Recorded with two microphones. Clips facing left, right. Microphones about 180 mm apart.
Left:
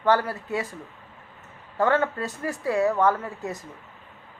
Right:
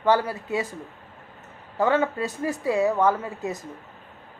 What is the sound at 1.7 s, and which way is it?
A woman's voice, 15° right (ahead or behind).